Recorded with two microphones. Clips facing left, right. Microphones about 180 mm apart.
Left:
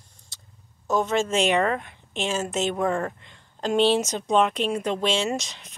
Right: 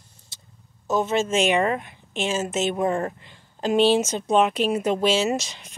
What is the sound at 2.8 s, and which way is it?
Speech, 20° right (ahead or behind).